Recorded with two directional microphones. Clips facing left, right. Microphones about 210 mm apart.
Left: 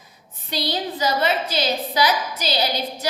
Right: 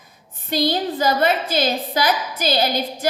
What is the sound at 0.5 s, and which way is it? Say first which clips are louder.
A woman's voice: right 6 dB; 50° right (ahead or behind).